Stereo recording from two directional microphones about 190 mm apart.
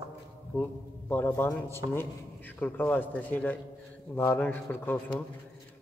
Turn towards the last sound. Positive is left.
turn(degrees=10)  # may be behind; listen again after turning